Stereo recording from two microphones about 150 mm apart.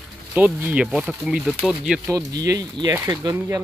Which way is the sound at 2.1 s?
25° right (ahead or behind).